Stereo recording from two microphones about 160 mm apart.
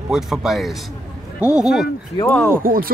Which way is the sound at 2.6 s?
65° right (ahead or behind).